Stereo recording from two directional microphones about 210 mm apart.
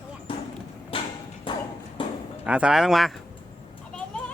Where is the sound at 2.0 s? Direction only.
25° left (ahead or behind).